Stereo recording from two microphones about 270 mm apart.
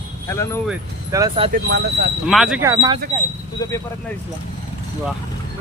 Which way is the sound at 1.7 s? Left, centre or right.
Right.